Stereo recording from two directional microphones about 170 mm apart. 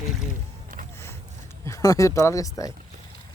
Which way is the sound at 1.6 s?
20° left (ahead or behind).